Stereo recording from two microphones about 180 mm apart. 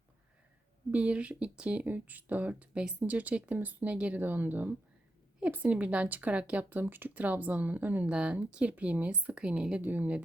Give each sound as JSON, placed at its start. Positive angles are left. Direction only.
{"t": 0.9, "sound": "speech", "side_deg": -5}